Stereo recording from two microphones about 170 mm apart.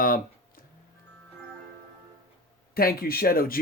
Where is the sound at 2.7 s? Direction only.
60° left (ahead or behind).